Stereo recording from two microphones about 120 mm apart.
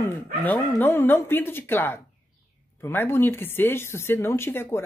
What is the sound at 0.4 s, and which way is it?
Speech, 15° left (ahead or behind).